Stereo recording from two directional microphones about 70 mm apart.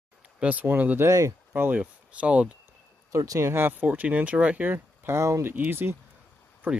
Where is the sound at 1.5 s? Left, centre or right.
Right.